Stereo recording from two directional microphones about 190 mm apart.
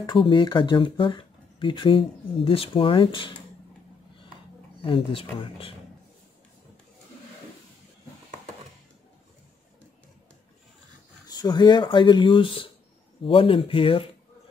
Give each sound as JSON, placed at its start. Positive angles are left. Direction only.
{"t": 0.0, "sound": "speech", "side_deg": 25}
{"t": 4.8, "sound": "speech", "side_deg": 25}
{"t": 11.2, "sound": "speech", "side_deg": 20}